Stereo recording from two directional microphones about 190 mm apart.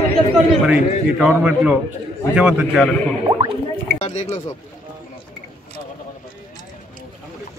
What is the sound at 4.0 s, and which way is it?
Speech, 35° left (ahead or behind).